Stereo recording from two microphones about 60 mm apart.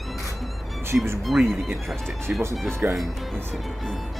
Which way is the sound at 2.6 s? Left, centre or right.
Right.